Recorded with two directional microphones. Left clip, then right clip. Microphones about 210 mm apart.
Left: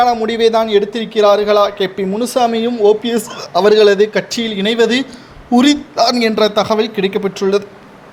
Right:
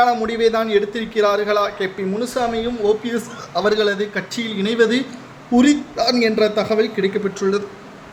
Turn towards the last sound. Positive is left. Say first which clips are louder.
# left 5 dB
turn(degrees=30)  # may be behind; listen again after turning